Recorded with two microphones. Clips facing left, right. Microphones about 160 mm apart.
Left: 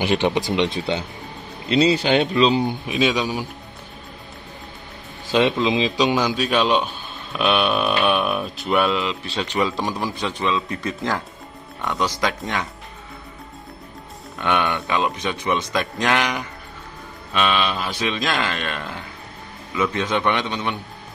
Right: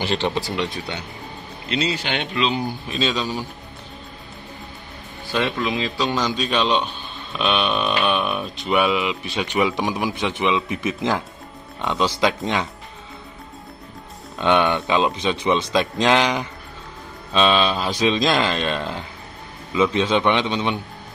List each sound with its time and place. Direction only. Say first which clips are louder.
0.0 s speech: left 3 dB; 15° left (ahead or behind)
1.7 s speech: left 7 dB; 35° left (ahead or behind)
2.6 s speech: left 3 dB; 15° left (ahead or behind)
5.3 s a man's voice: left 4 dB; 20° left (ahead or behind); by 12.6 s 20° right (ahead or behind)
14.4 s a man's voice: right 4 dB; 20° right (ahead or behind)